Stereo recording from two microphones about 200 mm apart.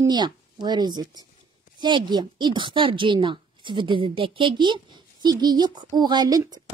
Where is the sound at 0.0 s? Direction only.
20° right (ahead or behind).